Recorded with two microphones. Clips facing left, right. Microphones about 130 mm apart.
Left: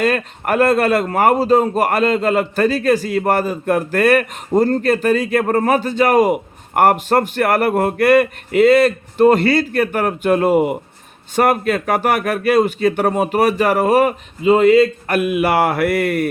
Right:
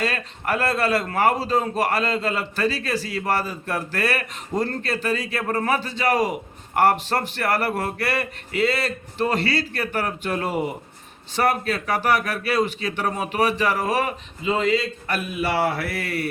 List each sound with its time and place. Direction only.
0.0 s a man's voice: 50° left (ahead or behind)